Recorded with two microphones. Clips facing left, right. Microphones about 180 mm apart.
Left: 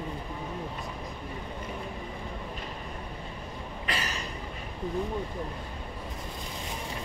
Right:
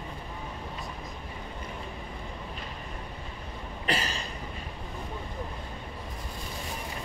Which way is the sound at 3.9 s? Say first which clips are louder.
Right 3 dB; 30° right (ahead or behind).